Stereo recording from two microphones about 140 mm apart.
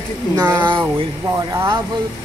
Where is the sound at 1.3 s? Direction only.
25° right (ahead or behind).